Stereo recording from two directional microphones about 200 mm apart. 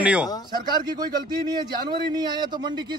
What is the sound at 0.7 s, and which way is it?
Speech, 20° right (ahead or behind).